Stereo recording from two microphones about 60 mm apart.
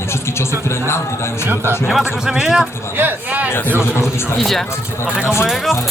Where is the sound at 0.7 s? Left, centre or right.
Left.